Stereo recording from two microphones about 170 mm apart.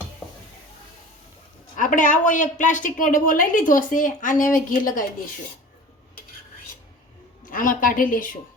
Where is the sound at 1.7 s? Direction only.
50° left (ahead or behind).